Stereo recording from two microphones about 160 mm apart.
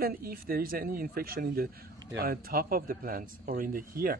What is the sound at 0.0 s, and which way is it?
A man's voice, 65° right (ahead or behind).